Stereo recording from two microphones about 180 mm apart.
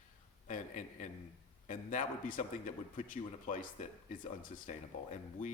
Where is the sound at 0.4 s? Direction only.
45° left (ahead or behind).